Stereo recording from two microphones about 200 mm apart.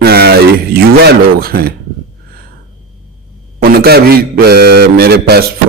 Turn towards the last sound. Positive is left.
turn(degrees=-50)  # may be behind; listen again after turning